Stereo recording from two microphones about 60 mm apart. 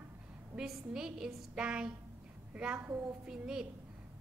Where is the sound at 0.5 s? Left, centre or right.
Centre.